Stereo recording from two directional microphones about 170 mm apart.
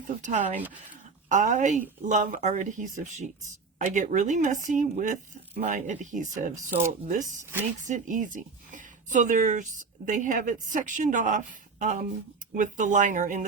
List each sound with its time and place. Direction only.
0.2 s a woman's voice: 45° right (ahead or behind)